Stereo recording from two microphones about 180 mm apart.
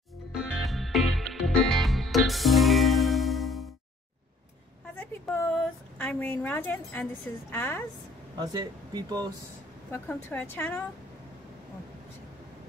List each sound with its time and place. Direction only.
0.7 s music: centre (ahead or behind)
4.9 s a sound: 10° left (ahead or behind)
5.9 s a woman's voice: 10° left (ahead or behind)
8.4 s speech: 20° right (ahead or behind)
9.8 s a woman's voice: 15° left (ahead or behind)